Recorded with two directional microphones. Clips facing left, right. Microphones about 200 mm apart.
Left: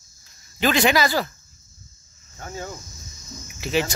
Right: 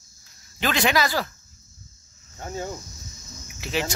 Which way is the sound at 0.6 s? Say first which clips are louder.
Left 3 dB; 5° left (ahead or behind).